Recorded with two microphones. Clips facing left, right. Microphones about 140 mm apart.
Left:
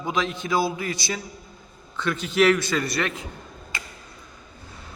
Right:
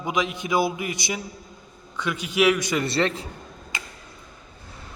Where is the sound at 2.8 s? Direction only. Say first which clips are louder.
Right 3 dB; 30° right (ahead or behind).